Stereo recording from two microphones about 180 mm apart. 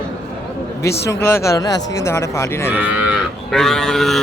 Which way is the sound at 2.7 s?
5° right (ahead or behind).